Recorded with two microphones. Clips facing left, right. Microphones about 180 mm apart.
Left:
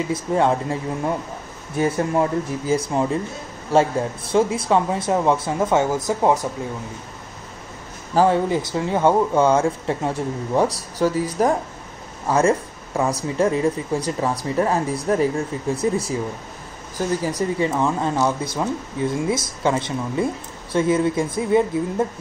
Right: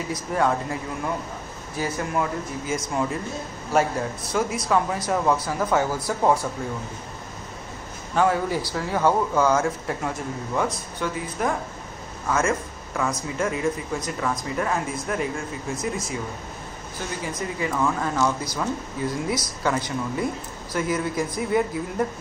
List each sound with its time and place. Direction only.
0.1 s speech: 25° left (ahead or behind)
8.1 s a man's voice: 30° left (ahead or behind)
8.5 s speech: 20° left (ahead or behind); by 11.2 s 35° left (ahead or behind)
12.3 s speech: 30° left (ahead or behind)
17.2 s speech: 35° left (ahead or behind)